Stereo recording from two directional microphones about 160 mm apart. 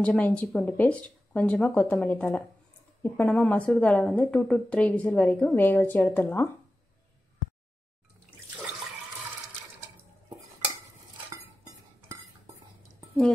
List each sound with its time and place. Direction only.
0.0 s a woman's voice: 5° left (ahead or behind)